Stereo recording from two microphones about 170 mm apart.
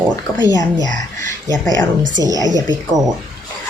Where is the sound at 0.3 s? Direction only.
20° left (ahead or behind).